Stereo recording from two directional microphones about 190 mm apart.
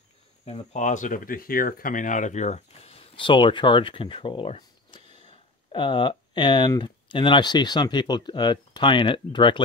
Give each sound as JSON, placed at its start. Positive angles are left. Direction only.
{"t": 0.5, "sound": "speech", "side_deg": 40}